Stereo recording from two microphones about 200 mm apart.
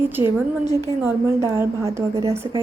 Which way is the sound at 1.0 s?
10° right (ahead or behind).